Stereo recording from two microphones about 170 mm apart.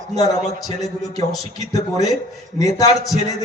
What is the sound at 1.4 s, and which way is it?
Speech, 20° left (ahead or behind).